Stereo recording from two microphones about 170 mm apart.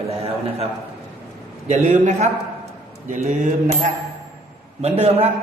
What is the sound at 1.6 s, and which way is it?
Speech, 40° right (ahead or behind).